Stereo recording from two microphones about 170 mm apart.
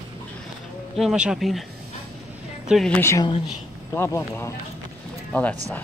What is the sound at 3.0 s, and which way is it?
Speech, 15° left (ahead or behind).